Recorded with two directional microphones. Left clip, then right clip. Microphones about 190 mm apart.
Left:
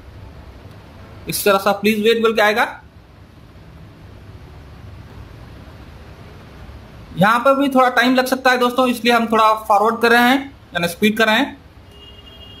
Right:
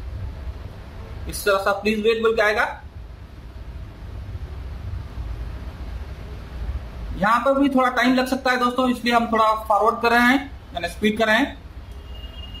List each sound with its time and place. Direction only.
1.2 s a man's voice: 35° left (ahead or behind)
7.2 s a man's voice: 30° left (ahead or behind)